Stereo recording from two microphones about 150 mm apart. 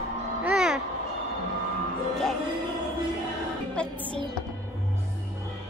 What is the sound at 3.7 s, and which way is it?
Speech, 5° left (ahead or behind).